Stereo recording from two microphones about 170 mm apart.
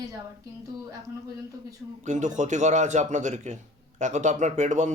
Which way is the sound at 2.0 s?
45° right (ahead or behind).